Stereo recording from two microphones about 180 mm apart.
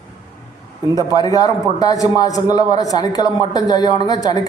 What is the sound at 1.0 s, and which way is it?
A man's voice, 20° left (ahead or behind).